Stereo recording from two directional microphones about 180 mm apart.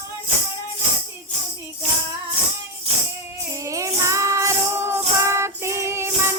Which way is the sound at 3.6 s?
15° right (ahead or behind).